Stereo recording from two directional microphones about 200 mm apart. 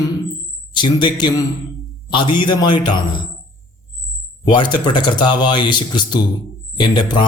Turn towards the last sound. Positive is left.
turn(degrees=20)  # may be behind; listen again after turning